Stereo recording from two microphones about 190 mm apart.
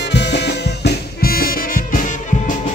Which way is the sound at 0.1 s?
65° left (ahead or behind).